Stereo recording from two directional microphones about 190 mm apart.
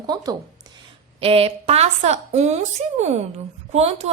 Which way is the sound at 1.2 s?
30° right (ahead or behind).